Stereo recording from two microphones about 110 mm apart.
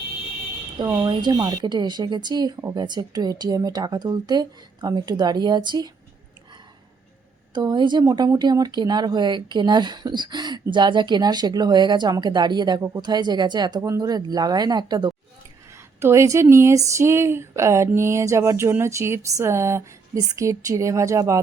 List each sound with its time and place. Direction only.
0.8 s speech: 40° right (ahead or behind)
7.5 s speech: 40° right (ahead or behind)
13.8 s speech: 30° right (ahead or behind)
16.0 s speech: 25° right (ahead or behind)